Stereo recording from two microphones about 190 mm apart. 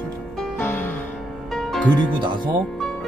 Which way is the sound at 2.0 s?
25° right (ahead or behind).